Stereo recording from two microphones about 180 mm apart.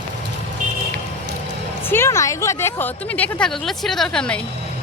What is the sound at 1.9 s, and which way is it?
Speech, 15° left (ahead or behind).